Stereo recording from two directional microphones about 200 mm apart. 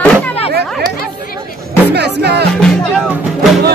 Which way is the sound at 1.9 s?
55° right (ahead or behind).